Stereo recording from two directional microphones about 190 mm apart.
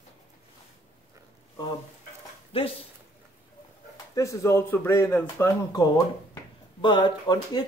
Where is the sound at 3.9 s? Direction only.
15° left (ahead or behind).